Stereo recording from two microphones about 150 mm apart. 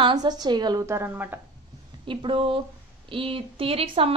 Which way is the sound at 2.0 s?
35° right (ahead or behind).